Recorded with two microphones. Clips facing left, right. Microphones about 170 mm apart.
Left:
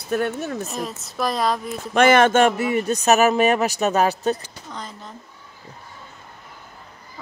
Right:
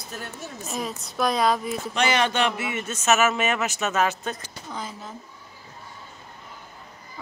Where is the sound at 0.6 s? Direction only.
Centre (ahead or behind).